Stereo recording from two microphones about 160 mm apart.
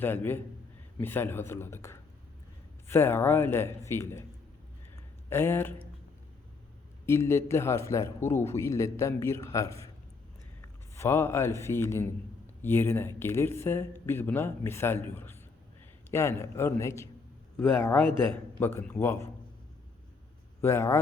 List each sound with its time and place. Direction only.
0.0 s a man's voice: 10° left (ahead or behind)
5.3 s a man's voice: 15° left (ahead or behind)
7.0 s a man's voice: 15° left (ahead or behind)
10.9 s a man's voice: 15° left (ahead or behind)
20.6 s speech: 15° left (ahead or behind)